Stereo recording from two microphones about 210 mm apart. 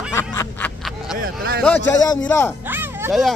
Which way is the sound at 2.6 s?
10° right (ahead or behind).